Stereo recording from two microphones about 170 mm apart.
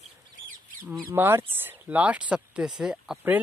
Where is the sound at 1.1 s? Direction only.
15° right (ahead or behind).